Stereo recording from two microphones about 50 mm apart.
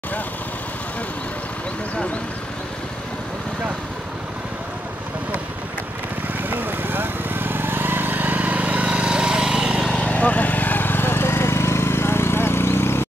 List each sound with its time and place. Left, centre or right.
6.5 s vehicle: right; by 9.7 s centre
9.9 s vehicle: left